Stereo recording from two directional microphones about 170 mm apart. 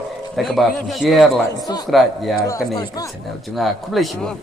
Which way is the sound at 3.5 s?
Centre (ahead or behind).